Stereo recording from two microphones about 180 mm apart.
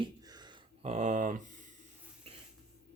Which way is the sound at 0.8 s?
40° right (ahead or behind).